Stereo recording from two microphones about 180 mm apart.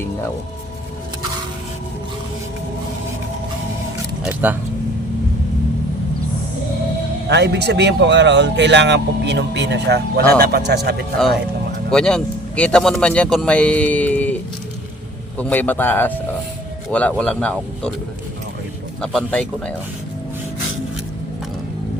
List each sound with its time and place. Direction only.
4.2 s speech: 10° right (ahead or behind)
7.3 s a man's voice: 70° right (ahead or behind)
11.9 s speech: 5° left (ahead or behind)
15.4 s speech: 10° left (ahead or behind)
19.0 s speech: 5° left (ahead or behind)